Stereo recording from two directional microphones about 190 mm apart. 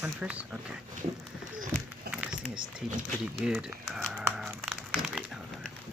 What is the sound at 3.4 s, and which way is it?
Speech, 5° right (ahead or behind).